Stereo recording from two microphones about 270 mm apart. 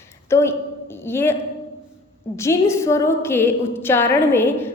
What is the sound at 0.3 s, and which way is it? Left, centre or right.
A woman's voice, centre.